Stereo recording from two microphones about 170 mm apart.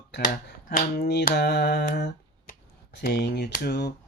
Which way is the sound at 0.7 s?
70° left (ahead or behind).